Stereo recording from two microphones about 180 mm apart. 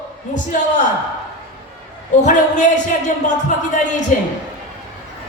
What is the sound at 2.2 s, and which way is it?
Music, 45° left (ahead or behind).